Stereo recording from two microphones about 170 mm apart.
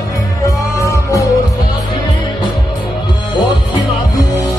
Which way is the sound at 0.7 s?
20° left (ahead or behind).